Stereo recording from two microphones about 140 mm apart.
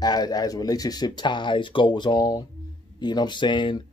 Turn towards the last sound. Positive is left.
turn(degrees=35)  # may be behind; listen again after turning